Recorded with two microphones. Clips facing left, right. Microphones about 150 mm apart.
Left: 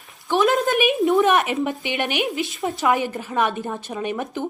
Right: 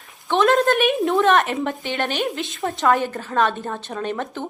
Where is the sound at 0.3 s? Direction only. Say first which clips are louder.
Right 2 dB; 5° left (ahead or behind).